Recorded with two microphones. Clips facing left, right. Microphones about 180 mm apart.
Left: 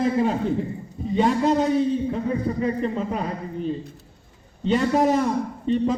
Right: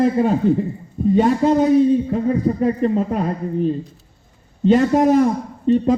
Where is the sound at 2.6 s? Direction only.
45° right (ahead or behind).